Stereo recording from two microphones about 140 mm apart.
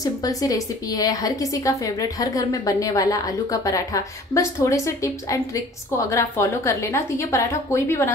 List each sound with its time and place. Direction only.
0.0 s a woman's voice: 25° left (ahead or behind)